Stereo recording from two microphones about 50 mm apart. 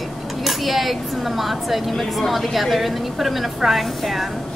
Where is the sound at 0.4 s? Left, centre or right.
Centre.